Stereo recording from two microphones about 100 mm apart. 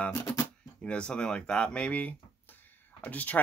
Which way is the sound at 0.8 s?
10° left (ahead or behind).